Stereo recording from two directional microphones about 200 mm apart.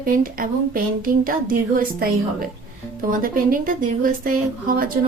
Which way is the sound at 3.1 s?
45° right (ahead or behind).